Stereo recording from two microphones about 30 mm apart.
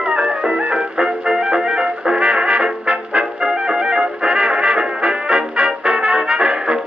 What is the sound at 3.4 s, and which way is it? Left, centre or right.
Music, right.